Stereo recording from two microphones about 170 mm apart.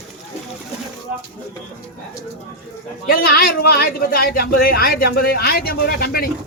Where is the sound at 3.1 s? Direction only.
60° left (ahead or behind).